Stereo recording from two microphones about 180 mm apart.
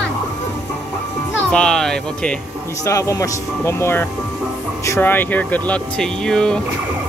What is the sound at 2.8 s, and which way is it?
Speech, 15° left (ahead or behind).